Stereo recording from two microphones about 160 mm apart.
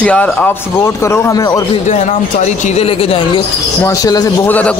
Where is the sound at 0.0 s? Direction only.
10° left (ahead or behind).